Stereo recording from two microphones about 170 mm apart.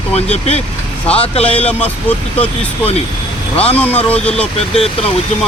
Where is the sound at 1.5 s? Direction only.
10° left (ahead or behind).